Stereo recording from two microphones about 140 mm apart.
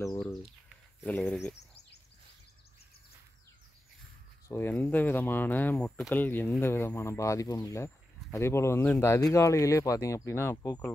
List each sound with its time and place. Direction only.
0.2 s a sound: centre (ahead or behind)
1.0 s speech: 10° left (ahead or behind)
4.5 s speech: 15° left (ahead or behind)